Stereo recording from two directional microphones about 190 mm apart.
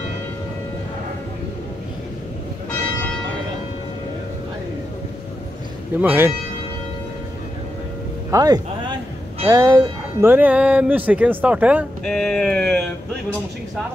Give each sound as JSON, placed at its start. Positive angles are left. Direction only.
{"t": 5.9, "sound": "speech", "side_deg": -10}
{"t": 8.3, "sound": "speech", "side_deg": -20}
{"t": 12.0, "sound": "speech", "side_deg": 5}